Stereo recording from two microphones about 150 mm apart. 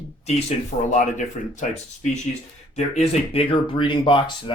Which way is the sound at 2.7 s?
50° left (ahead or behind).